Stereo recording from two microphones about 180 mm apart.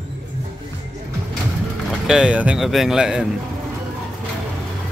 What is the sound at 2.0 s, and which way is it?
Speech, 5° right (ahead or behind).